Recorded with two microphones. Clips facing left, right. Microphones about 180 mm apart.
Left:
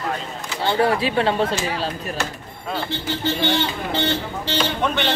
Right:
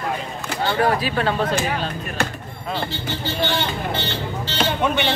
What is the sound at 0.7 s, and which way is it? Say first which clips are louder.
Speech: left 2 dB; 25° left (ahead or behind).